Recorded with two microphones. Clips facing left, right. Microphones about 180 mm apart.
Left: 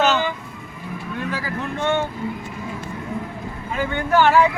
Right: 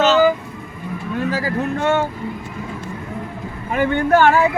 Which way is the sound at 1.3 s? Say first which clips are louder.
Right 7 dB; 40° right (ahead or behind).